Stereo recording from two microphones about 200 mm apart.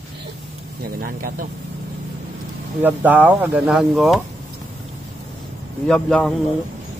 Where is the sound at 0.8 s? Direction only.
45° right (ahead or behind).